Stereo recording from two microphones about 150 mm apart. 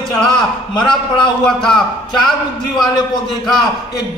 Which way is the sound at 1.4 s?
5° left (ahead or behind).